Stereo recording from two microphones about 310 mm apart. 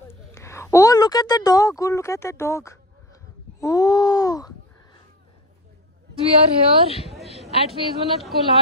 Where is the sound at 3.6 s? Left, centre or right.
Centre.